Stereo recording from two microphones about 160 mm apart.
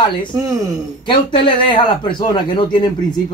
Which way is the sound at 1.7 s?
30° left (ahead or behind).